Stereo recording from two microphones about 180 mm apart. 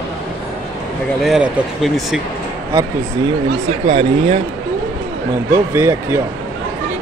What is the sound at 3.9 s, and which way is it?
Speech, 30° right (ahead or behind).